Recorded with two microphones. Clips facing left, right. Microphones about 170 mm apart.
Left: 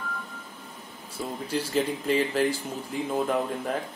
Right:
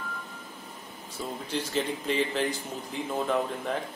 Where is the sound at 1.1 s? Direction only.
10° left (ahead or behind).